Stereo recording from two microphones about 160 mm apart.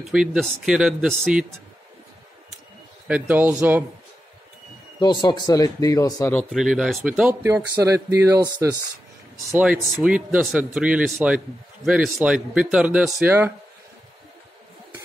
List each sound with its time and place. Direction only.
0.0 s speech: 5° right (ahead or behind)
3.1 s a man's voice: 10° right (ahead or behind)
5.0 s speech: 30° left (ahead or behind)
6.5 s a man's voice: 5° right (ahead or behind); by 8.7 s 20° right (ahead or behind)
9.5 s a man's voice: 10° right (ahead or behind)